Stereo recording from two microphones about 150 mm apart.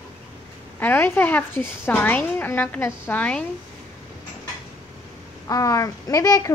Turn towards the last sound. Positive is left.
turn(degrees=25)  # may be behind; listen again after turning